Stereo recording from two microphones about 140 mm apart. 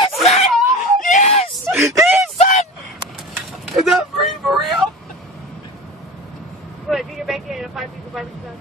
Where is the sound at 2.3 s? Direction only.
50° left (ahead or behind).